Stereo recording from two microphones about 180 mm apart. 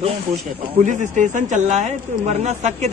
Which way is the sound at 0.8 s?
45° right (ahead or behind).